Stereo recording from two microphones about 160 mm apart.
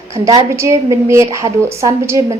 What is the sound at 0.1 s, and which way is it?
A woman's voice, 20° right (ahead or behind).